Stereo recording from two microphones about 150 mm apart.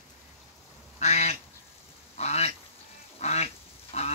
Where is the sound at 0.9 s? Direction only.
50° left (ahead or behind).